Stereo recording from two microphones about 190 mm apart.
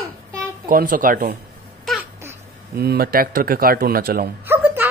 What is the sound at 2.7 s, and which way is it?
Speech, 55° right (ahead or behind).